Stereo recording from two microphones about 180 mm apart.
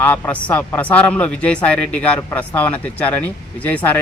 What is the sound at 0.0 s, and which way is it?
A man's voice, 10° left (ahead or behind).